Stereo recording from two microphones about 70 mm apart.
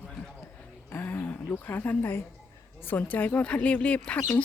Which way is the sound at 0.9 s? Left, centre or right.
Left.